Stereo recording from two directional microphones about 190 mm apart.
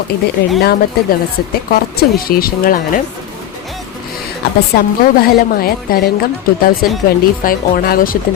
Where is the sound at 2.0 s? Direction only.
50° left (ahead or behind).